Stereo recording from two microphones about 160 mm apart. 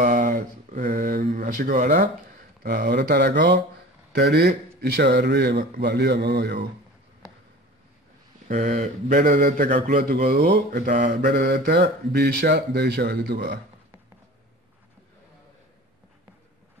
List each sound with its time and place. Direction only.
0.0 s mantra: 65° right (ahead or behind)
2.6 s a man's voice: 75° right (ahead or behind); by 6.6 s 90° right
8.5 s a man's voice: 50° right (ahead or behind); by 13.6 s 80° right